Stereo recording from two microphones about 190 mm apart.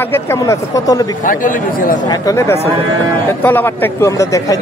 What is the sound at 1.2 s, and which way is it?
Speech, 45° left (ahead or behind).